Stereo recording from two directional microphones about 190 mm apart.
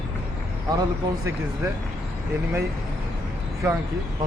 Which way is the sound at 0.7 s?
20° right (ahead or behind).